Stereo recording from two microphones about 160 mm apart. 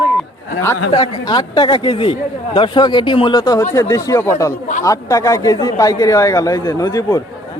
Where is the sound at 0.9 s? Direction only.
30° left (ahead or behind).